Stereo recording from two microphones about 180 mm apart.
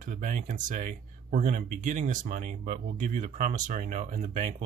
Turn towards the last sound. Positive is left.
turn(degrees=-40)  # may be behind; listen again after turning